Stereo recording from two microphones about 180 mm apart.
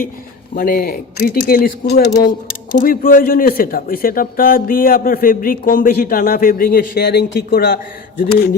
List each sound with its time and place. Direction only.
0.5 s speech: 50° left (ahead or behind)